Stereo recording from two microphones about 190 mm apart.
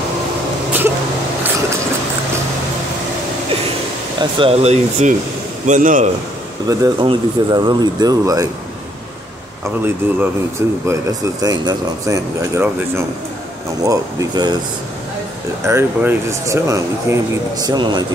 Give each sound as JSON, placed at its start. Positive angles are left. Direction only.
{"t": 4.2, "sound": "speech", "side_deg": -30}
{"t": 5.7, "sound": "a man's voice", "side_deg": -45}
{"t": 6.7, "sound": "speech", "side_deg": -20}
{"t": 10.0, "sound": "speech", "side_deg": -10}
{"t": 15.6, "sound": "speech", "side_deg": -10}